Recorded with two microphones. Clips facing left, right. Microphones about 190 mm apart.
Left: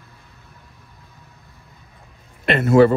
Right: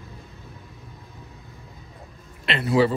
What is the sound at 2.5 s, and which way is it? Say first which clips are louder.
Speech: left 7 dB; 50° left (ahead or behind).